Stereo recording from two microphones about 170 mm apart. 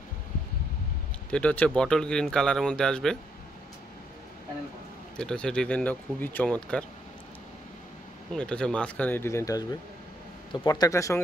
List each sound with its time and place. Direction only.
1.3 s speech: 10° left (ahead or behind)
5.1 s speech: 5° left (ahead or behind)
8.3 s speech: 5° left (ahead or behind)